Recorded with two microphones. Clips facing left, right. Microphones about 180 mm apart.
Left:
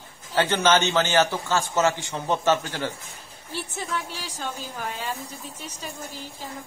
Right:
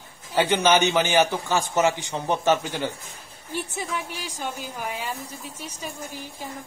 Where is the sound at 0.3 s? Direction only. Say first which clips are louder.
Right 1 dB; 15° right (ahead or behind).